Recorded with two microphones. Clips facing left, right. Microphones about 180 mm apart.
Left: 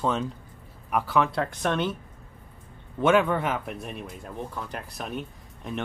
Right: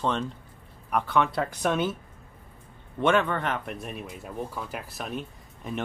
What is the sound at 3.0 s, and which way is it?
Speech, 10° left (ahead or behind).